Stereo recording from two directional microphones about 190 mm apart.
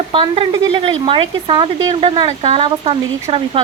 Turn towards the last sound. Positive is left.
turn(degrees=-30)  # may be behind; listen again after turning